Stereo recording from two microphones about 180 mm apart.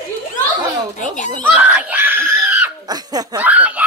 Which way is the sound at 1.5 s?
10° right (ahead or behind).